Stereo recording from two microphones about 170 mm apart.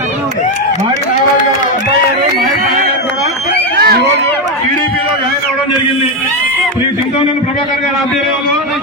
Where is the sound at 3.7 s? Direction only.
65° right (ahead or behind).